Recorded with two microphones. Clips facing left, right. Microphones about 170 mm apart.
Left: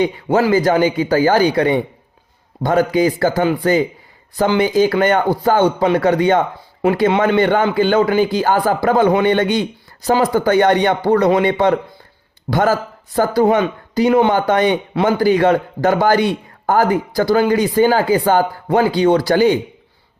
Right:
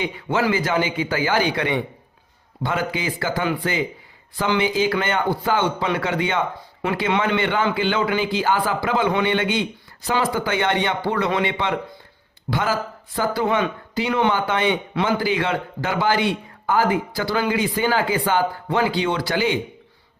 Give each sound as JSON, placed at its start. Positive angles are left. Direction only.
{"t": 0.0, "sound": "a man's voice", "side_deg": 40}